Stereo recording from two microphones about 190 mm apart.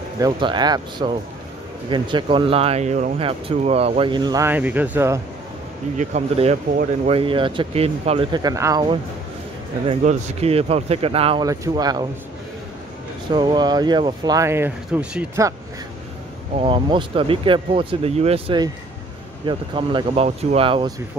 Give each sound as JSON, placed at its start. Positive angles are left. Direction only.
{"t": 0.2, "sound": "speech", "side_deg": -25}
{"t": 5.9, "sound": "speech", "side_deg": -35}
{"t": 9.8, "sound": "speech", "side_deg": -30}
{"t": 11.4, "sound": "speech", "side_deg": -20}
{"t": 13.3, "sound": "speech", "side_deg": -25}
{"t": 16.5, "sound": "speech", "side_deg": -25}